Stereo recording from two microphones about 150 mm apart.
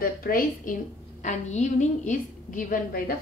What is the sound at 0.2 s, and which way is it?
Speech, 70° left (ahead or behind).